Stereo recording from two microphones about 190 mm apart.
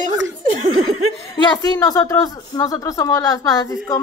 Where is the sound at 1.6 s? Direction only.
20° left (ahead or behind).